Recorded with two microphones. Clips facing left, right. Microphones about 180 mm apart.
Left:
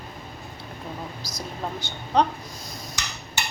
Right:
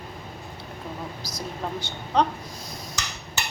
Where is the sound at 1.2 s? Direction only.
30° right (ahead or behind).